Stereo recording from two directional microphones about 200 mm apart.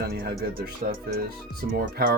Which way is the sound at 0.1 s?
50° right (ahead or behind).